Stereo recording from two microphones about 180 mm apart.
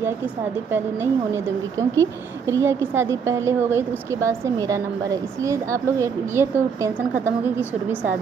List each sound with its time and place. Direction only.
0.7 s a woman's voice: 10° right (ahead or behind)